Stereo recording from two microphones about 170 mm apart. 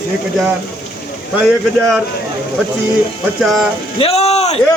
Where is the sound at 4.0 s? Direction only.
35° left (ahead or behind).